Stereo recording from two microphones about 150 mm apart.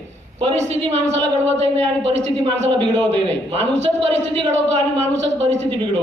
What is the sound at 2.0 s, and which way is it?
A man's voice, 40° right (ahead or behind).